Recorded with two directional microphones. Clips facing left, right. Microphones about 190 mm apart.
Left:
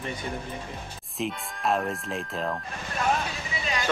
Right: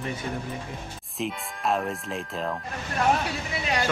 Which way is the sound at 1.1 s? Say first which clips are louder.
Even; centre (ahead or behind).